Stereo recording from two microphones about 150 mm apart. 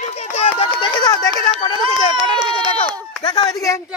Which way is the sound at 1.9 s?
40° left (ahead or behind).